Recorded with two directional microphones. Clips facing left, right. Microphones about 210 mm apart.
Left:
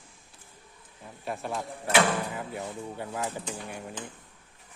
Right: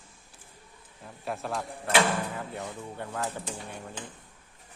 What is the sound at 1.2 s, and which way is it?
Speech, centre (ahead or behind).